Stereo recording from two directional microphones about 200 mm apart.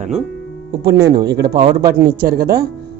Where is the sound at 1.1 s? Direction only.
55° right (ahead or behind).